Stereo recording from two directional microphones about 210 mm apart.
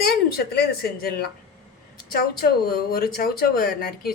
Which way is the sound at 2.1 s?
45° left (ahead or behind).